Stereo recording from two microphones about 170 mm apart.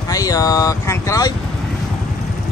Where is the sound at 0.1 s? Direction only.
20° left (ahead or behind).